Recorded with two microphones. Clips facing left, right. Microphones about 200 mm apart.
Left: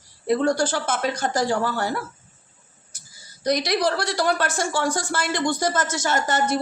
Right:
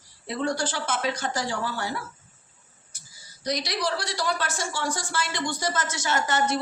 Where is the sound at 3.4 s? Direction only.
55° left (ahead or behind).